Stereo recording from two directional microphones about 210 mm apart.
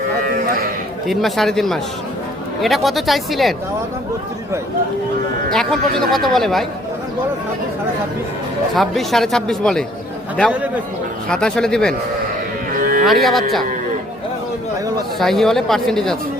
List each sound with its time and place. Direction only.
1.0 s speech: centre (ahead or behind)
5.5 s speech: centre (ahead or behind)
8.7 s speech: centre (ahead or behind)
11.3 s speech: 5° left (ahead or behind)
12.7 s music: 40° right (ahead or behind)
13.2 s speech: centre (ahead or behind)
15.2 s speech: centre (ahead or behind)